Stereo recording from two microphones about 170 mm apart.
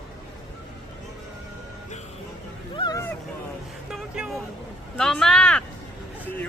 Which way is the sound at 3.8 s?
5° right (ahead or behind).